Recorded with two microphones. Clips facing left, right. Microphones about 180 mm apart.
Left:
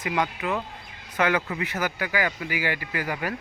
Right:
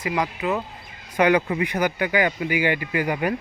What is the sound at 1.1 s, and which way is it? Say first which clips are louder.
Speech: right 6 dB; 15° right (ahead or behind).